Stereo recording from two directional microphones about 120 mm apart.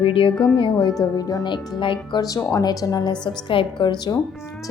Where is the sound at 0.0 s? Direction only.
50° left (ahead or behind).